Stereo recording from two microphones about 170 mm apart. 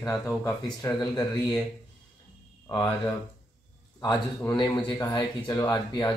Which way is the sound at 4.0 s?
15° left (ahead or behind).